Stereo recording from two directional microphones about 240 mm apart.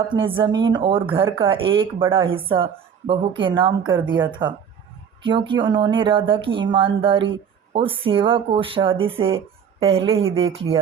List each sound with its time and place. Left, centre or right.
0.1 s speech: right
10.7 s speech: centre